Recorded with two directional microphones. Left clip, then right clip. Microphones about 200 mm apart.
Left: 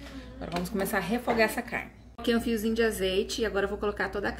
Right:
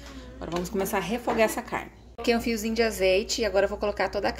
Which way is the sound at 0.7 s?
20° right (ahead or behind).